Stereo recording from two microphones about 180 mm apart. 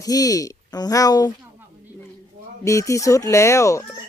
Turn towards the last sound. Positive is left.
turn(degrees=15)  # may be behind; listen again after turning